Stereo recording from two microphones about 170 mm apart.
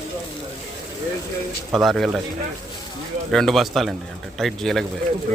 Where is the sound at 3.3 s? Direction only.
Centre (ahead or behind).